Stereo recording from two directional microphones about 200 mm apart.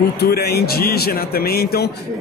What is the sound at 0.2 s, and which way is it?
Speech, 50° left (ahead or behind).